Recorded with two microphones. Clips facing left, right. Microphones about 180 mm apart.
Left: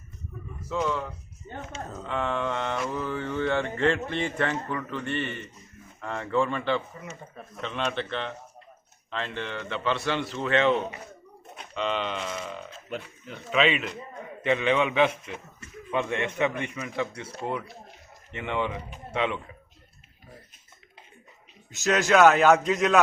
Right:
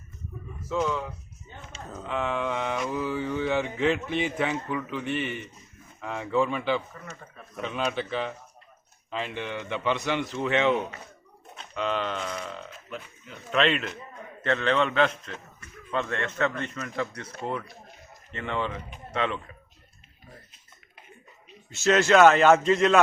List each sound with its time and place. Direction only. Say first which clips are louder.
0.7 s mantra: right 1 dB; 5° right (ahead or behind)
4.1 s a man's voice: right 1 dB; 5° right (ahead or behind)
4.7 s mantra: right 1 dB; 5° right (ahead or behind)
9.0 s a man's voice: right 1 dB; 10° right (ahead or behind)
11.9 s a man's voice: even; 10° left (ahead or behind)
13.3 s mantra: even; 5° left (ahead or behind)
14.4 s a man's voice: left 1 dB; 10° left (ahead or behind)
22.1 s mantra: even; centre (ahead or behind)